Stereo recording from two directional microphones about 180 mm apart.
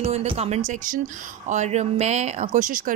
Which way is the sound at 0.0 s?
35° right (ahead or behind).